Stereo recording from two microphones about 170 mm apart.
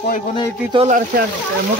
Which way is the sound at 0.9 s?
50° right (ahead or behind).